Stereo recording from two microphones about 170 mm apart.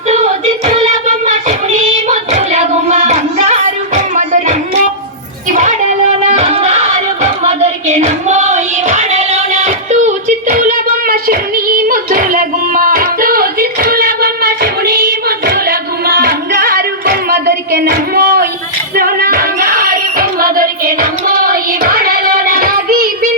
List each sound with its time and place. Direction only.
0.1 s child singing: 40° right (ahead or behind)
5.5 s music: 45° right (ahead or behind)
7.9 s a sound: 45° right (ahead or behind); by 18.4 s 65° right (ahead or behind)
18.9 s music: 55° right (ahead or behind)